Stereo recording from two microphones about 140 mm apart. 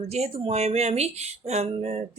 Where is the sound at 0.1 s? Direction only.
45° right (ahead or behind).